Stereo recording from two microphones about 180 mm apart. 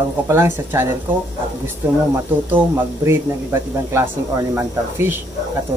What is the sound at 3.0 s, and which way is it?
Speech, 15° right (ahead or behind).